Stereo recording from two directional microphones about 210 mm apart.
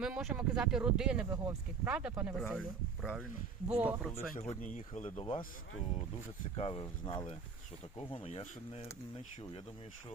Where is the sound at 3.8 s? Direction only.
5° right (ahead or behind).